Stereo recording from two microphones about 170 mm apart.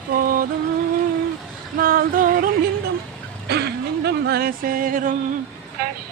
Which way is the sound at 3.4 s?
75° right (ahead or behind).